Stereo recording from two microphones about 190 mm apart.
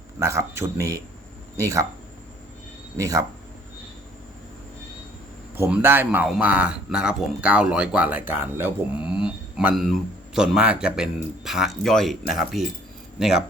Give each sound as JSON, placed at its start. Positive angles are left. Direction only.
{"t": 0.2, "sound": "speech", "side_deg": -15}
{"t": 3.0, "sound": "speech", "side_deg": -20}
{"t": 5.5, "sound": "a man's voice", "side_deg": -10}